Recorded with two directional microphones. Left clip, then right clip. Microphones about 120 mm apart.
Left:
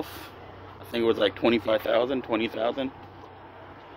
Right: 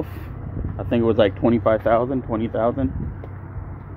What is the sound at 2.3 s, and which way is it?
Speech, 85° left.